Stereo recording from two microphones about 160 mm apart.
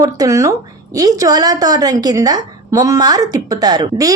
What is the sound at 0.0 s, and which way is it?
A woman's voice, 20° right (ahead or behind).